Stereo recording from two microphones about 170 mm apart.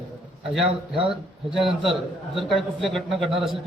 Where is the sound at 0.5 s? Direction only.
5° right (ahead or behind).